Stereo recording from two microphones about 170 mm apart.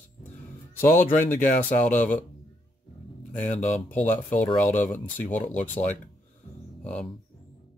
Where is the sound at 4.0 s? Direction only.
50° left (ahead or behind).